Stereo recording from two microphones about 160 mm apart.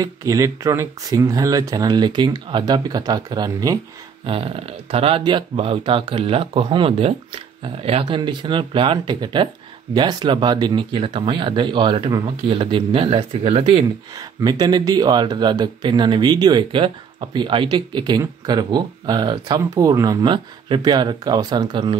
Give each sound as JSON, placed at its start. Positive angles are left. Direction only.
{"t": 0.0, "sound": "speech", "side_deg": -20}
{"t": 4.3, "sound": "speech", "side_deg": -35}
{"t": 14.1, "sound": "speech", "side_deg": -25}